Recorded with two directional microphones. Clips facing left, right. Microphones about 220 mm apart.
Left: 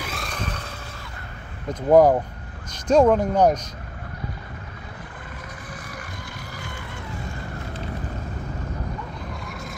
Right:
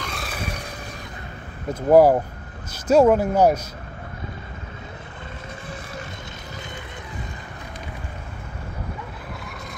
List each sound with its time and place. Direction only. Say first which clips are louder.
0.0 s vehicle: even; centre (ahead or behind)
1.7 s speech: right 1 dB; 10° right (ahead or behind)